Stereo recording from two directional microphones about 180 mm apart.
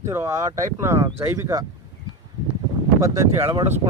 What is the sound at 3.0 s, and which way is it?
Speech, 15° right (ahead or behind).